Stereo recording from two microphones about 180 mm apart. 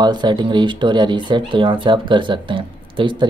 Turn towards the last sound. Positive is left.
turn(degrees=-25)  # may be behind; listen again after turning